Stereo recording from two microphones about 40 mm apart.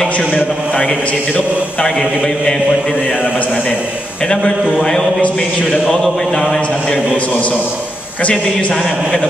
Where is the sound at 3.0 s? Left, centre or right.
Left.